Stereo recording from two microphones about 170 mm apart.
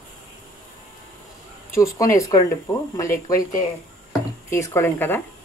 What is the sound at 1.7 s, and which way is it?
Speech, 20° left (ahead or behind).